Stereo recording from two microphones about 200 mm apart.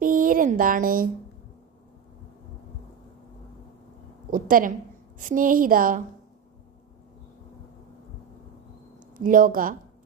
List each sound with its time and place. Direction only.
0.0 s speech: 45° right (ahead or behind)
4.3 s a woman's voice: 45° right (ahead or behind)
9.1 s a woman's voice: 45° right (ahead or behind)